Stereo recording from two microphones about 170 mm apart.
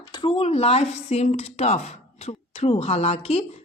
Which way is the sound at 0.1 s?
30° left (ahead or behind).